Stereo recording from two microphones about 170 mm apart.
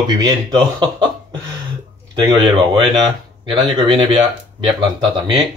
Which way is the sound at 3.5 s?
30° right (ahead or behind).